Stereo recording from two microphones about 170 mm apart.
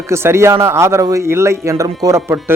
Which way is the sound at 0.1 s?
15° right (ahead or behind).